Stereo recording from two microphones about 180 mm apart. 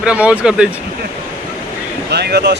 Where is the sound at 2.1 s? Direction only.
65° right (ahead or behind).